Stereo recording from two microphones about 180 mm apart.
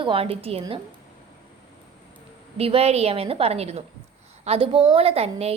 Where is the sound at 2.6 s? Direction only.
35° right (ahead or behind).